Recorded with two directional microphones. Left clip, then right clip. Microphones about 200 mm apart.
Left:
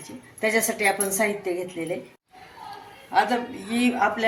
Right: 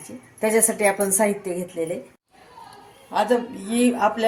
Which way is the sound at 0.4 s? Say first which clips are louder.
Right 2 dB; 45° right (ahead or behind).